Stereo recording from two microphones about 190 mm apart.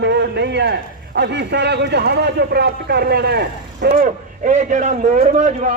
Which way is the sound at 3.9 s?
40° right (ahead or behind).